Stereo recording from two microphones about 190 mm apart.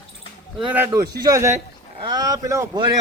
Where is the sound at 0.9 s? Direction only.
15° right (ahead or behind).